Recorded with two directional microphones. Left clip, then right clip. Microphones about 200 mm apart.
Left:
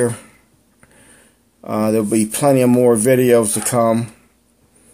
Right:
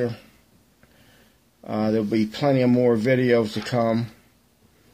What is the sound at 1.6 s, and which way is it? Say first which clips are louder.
Speech: left 6 dB; 15° left (ahead or behind).